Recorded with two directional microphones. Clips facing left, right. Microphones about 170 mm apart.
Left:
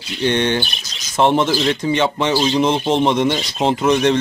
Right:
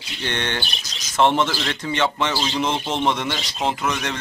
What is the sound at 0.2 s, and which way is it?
Speech, 15° left (ahead or behind).